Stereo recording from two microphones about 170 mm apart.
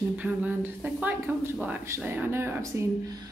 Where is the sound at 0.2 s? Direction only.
10° right (ahead or behind).